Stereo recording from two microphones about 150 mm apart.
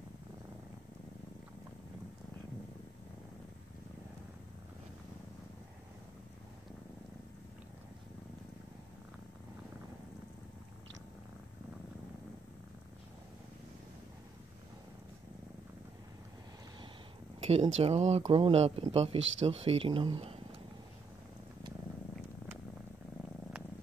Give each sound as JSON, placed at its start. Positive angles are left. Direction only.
{"t": 17.4, "sound": "speech", "side_deg": -45}